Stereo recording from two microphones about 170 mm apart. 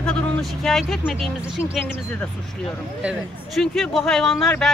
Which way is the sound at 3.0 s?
Centre (ahead or behind).